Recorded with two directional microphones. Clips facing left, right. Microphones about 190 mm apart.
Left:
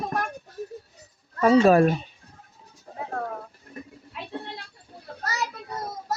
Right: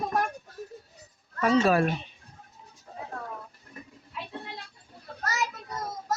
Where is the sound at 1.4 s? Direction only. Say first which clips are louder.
Left 6 dB; 40° left (ahead or behind).